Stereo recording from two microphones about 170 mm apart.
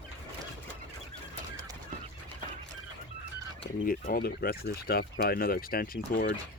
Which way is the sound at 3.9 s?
60° left (ahead or behind).